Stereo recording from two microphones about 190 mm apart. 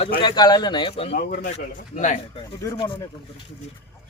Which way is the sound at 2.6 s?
25° left (ahead or behind).